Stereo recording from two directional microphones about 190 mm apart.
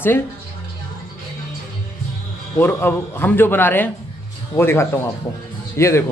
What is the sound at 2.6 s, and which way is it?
A man's voice, 10° left (ahead or behind).